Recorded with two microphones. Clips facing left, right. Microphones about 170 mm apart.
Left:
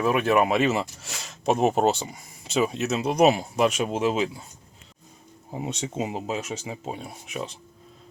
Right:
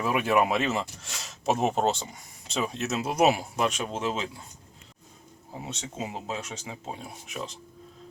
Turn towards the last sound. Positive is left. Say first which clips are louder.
# left 3 dB
turn(degrees=0)  # may be behind; listen again after turning